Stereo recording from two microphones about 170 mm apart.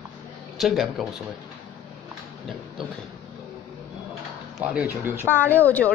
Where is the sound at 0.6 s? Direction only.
Centre (ahead or behind).